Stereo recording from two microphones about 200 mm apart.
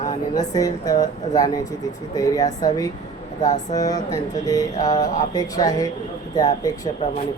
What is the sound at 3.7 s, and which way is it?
Speech, 20° left (ahead or behind).